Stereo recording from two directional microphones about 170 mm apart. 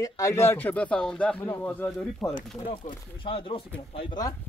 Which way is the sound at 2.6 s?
30° left (ahead or behind).